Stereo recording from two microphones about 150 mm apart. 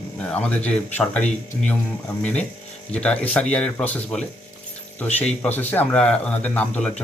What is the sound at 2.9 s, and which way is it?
Speech, 5° left (ahead or behind).